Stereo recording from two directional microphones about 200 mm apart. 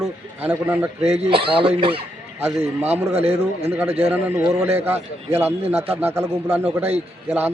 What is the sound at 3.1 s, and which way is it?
Speech, 30° right (ahead or behind).